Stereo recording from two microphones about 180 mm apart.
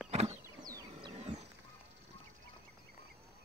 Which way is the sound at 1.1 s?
35° right (ahead or behind).